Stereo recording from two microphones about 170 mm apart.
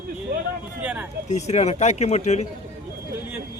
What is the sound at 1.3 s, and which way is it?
Speech, 40° left (ahead or behind).